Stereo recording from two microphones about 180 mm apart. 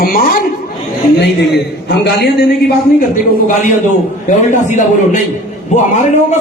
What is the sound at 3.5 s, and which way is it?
A man's voice, 45° left (ahead or behind).